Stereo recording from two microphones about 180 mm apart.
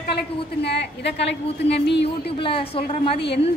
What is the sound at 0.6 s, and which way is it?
A woman's voice, 70° left (ahead or behind).